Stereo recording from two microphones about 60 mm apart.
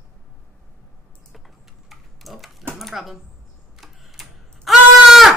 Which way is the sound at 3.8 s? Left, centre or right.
Centre.